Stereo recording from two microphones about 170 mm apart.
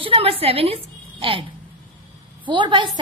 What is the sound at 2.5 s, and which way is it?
Speech, 30° right (ahead or behind).